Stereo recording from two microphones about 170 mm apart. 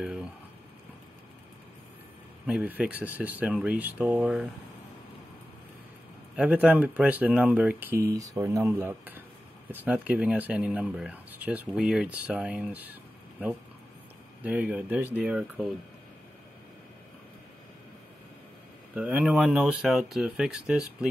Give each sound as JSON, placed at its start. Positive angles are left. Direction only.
{"t": 0.0, "sound": "speech", "side_deg": -5}
{"t": 2.4, "sound": "speech", "side_deg": -10}
{"t": 6.3, "sound": "speech", "side_deg": -10}
{"t": 14.4, "sound": "speech", "side_deg": -10}
{"t": 18.9, "sound": "speech", "side_deg": -10}